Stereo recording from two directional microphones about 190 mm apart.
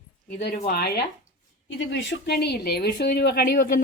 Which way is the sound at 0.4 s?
55° left (ahead or behind).